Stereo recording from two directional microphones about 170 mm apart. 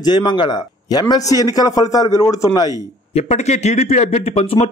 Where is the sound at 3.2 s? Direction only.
40° left (ahead or behind).